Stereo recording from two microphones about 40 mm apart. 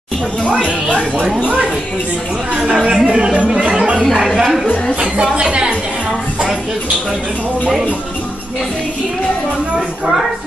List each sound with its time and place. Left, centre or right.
0.4 s speech: left
0.8 s speech: right
2.6 s a woman's voice: centre
3.6 s a sound: right
5.1 s a sound: right
9.8 s speech: centre